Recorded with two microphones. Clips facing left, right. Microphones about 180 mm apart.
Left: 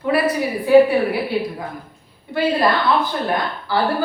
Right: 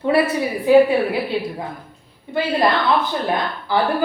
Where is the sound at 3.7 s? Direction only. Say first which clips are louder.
Right 1 dB; 20° right (ahead or behind).